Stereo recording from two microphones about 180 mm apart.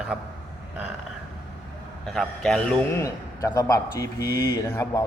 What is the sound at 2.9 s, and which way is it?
Speech, 15° left (ahead or behind).